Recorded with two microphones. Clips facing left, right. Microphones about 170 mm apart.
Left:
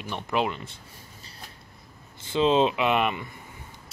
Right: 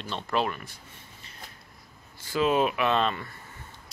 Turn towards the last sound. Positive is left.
turn(degrees=15)  # may be behind; listen again after turning